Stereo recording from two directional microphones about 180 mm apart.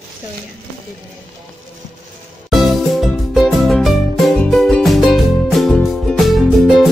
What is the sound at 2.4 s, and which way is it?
Music, centre (ahead or behind).